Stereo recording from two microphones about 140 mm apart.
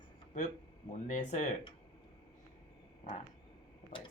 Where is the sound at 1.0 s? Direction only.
60° left (ahead or behind).